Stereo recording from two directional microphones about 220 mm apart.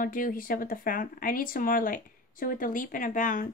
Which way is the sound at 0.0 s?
40° left (ahead or behind).